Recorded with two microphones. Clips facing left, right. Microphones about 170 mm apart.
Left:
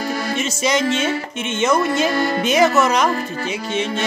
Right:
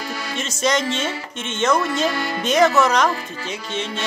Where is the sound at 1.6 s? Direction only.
5° left (ahead or behind).